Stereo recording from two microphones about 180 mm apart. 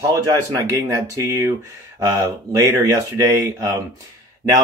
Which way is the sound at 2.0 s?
20° right (ahead or behind).